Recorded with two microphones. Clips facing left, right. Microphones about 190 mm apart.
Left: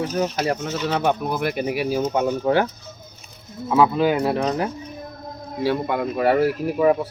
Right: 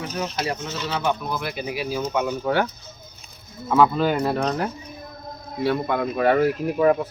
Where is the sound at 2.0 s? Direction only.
35° left (ahead or behind).